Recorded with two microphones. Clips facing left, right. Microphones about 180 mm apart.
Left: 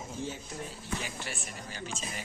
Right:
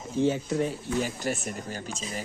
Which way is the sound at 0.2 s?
85° right.